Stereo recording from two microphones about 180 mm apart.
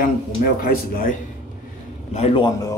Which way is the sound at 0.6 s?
50° left (ahead or behind).